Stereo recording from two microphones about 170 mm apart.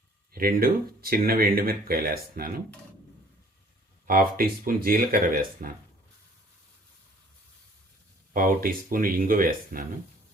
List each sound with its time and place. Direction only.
0.3 s speech: 60° right (ahead or behind)
4.0 s speech: 55° right (ahead or behind)
8.3 s speech: 55° right (ahead or behind)